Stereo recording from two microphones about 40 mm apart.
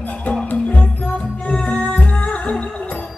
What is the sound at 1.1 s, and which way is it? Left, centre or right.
Music, left.